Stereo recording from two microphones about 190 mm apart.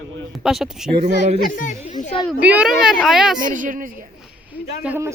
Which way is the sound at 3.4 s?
45° right (ahead or behind).